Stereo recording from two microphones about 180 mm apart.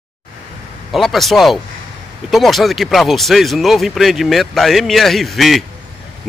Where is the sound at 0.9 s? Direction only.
Centre (ahead or behind).